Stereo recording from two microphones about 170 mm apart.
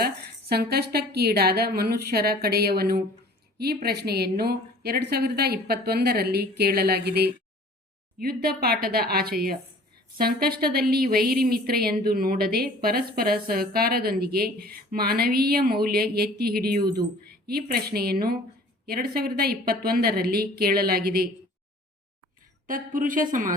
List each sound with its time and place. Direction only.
0.0 s a woman's voice: 65° right (ahead or behind)
16.8 s speech: 25° right (ahead or behind)
17.2 s a woman's voice: 65° right (ahead or behind)
22.6 s speech: 55° right (ahead or behind)